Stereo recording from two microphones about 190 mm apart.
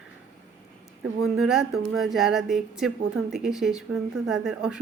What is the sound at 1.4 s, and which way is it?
Speech, centre (ahead or behind).